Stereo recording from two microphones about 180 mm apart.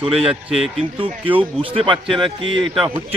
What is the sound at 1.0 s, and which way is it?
Speech, 30° right (ahead or behind).